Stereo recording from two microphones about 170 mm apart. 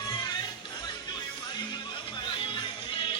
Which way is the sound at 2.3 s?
30° left (ahead or behind).